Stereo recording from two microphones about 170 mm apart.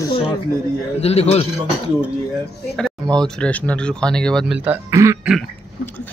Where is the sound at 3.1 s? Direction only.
5° left (ahead or behind).